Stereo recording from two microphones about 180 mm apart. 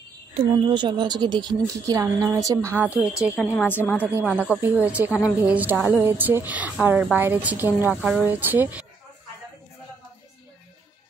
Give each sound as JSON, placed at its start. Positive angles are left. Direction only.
{"t": 0.3, "sound": "a woman's voice", "side_deg": -25}
{"t": 3.5, "sound": "a woman's voice", "side_deg": 10}
{"t": 4.0, "sound": "a woman's voice", "side_deg": -5}